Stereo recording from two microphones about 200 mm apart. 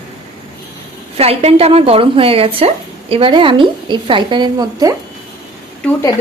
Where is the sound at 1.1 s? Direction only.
30° right (ahead or behind).